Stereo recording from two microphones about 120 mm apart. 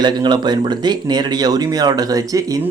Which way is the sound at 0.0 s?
40° right (ahead or behind).